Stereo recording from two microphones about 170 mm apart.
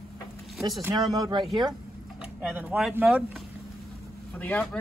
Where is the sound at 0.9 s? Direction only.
25° right (ahead or behind).